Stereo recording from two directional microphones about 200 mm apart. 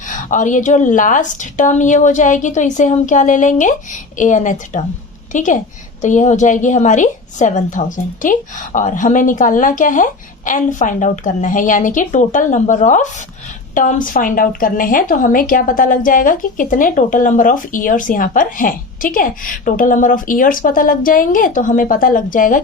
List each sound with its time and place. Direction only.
0.1 s a woman's voice: 40° left (ahead or behind)